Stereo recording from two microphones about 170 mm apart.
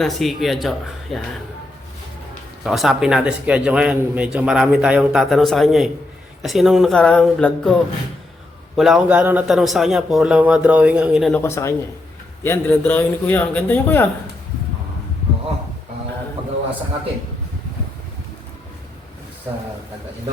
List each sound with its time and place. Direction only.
0.0 s speech: centre (ahead or behind)
2.6 s speech: centre (ahead or behind)
11.3 s a man's voice: 15° left (ahead or behind)